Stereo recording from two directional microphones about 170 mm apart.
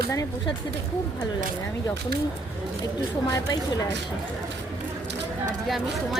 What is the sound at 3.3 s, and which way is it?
Speech, 20° left (ahead or behind).